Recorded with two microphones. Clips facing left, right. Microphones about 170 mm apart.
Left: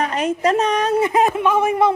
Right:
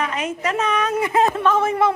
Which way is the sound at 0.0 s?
35° left (ahead or behind).